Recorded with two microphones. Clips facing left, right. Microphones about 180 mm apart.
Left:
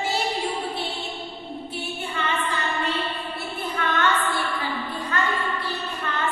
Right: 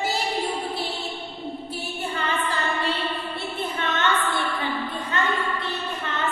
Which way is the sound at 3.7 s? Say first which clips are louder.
Left 2 dB; 25° right (ahead or behind).